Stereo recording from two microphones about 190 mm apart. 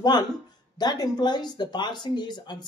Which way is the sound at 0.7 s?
20° left (ahead or behind).